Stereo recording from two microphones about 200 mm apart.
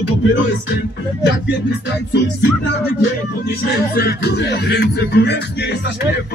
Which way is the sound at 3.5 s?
55° left (ahead or behind).